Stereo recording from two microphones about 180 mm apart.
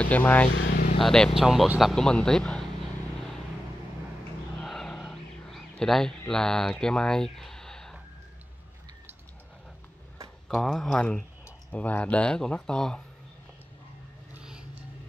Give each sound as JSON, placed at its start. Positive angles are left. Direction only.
{"t": 0.0, "sound": "speech", "side_deg": 10}
{"t": 0.5, "sound": "speech", "side_deg": 90}
{"t": 0.9, "sound": "speech", "side_deg": 5}
{"t": 4.6, "sound": "a sound", "side_deg": 0}
{"t": 10.5, "sound": "speech", "side_deg": 0}
{"t": 14.3, "sound": "vehicle", "side_deg": -5}